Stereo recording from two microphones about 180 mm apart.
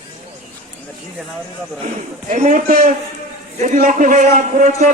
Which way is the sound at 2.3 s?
45° right (ahead or behind).